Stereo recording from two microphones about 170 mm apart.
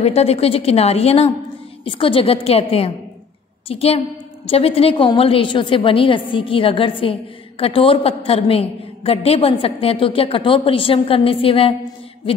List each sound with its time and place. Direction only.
0.0 s a woman's voice: 40° left (ahead or behind)